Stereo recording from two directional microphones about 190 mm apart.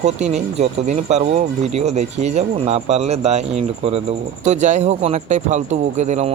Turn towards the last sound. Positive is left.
turn(degrees=-35)  # may be behind; listen again after turning